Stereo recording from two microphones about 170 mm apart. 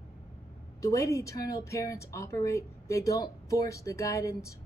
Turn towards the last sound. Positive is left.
turn(degrees=20)  # may be behind; listen again after turning